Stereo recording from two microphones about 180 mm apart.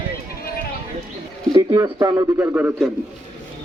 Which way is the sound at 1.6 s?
20° right (ahead or behind).